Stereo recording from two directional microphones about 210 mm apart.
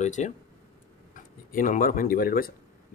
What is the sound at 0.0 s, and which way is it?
Speech, 35° left (ahead or behind).